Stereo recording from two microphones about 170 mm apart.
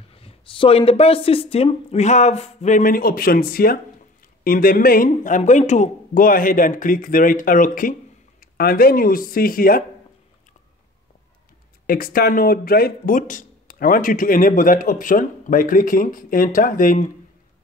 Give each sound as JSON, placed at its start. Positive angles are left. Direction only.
{"t": 0.1, "sound": "speech", "side_deg": 35}
{"t": 11.8, "sound": "speech", "side_deg": 60}